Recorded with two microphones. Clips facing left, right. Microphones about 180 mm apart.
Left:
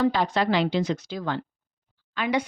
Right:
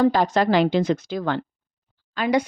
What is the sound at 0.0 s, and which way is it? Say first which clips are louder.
Speech: right 4 dB; 45° right (ahead or behind).